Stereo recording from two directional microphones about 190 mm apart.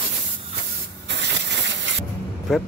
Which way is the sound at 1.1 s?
70° right (ahead or behind).